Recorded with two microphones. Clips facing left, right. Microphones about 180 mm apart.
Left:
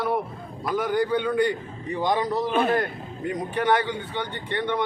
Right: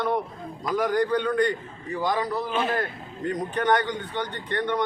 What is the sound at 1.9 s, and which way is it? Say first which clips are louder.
Speech: left 2 dB; 20° left (ahead or behind).